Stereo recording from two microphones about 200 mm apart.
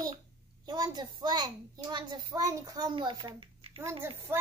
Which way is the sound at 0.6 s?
20° right (ahead or behind).